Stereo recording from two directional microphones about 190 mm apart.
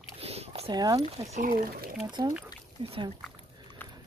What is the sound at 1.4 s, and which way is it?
Speech, 45° right (ahead or behind).